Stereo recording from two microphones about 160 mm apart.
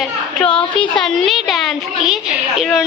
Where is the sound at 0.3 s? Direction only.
5° left (ahead or behind).